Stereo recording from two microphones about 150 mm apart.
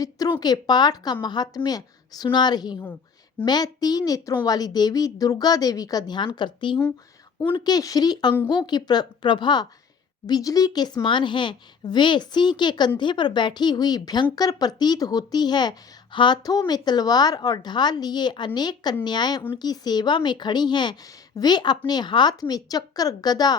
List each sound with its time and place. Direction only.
0.0 s a woman's voice: 25° left (ahead or behind)